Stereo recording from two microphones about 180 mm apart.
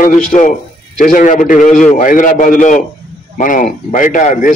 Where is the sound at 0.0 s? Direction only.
45° left (ahead or behind).